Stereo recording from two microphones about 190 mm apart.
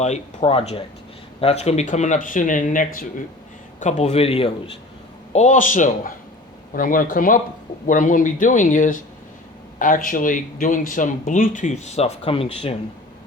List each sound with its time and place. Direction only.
0.0 s a man's voice: 35° left (ahead or behind)